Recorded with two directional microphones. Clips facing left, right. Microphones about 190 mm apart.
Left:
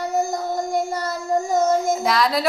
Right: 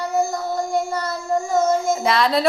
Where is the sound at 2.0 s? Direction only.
Centre (ahead or behind).